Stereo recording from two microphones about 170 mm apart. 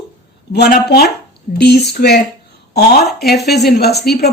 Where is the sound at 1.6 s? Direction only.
75° left (ahead or behind).